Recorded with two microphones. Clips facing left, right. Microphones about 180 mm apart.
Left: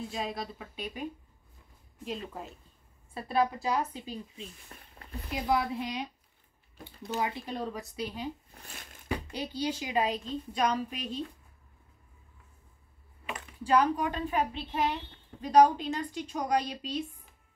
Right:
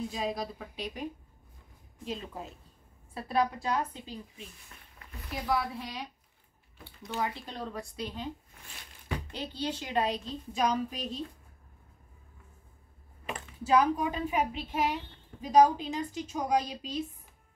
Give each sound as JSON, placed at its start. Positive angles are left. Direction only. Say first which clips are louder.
{"t": 0.1, "sound": "speech", "louder": "right 2 dB", "side_deg": 0}
{"t": 2.0, "sound": "a woman's voice", "louder": "even", "side_deg": 0}
{"t": 4.6, "sound": "a sound", "louder": "left 3 dB", "side_deg": 35}
{"t": 5.3, "sound": "a woman's voice", "louder": "left 2 dB", "side_deg": 20}
{"t": 7.2, "sound": "a woman's voice", "louder": "left 1 dB", "side_deg": 15}
{"t": 7.7, "sound": "a woman's voice", "louder": "left 1 dB", "side_deg": 5}
{"t": 8.5, "sound": "a sound", "louder": "left 3 dB", "side_deg": 35}
{"t": 9.1, "sound": "speech", "louder": "left 3 dB", "side_deg": 10}
{"t": 13.7, "sound": "a woman's voice", "louder": "even", "side_deg": -5}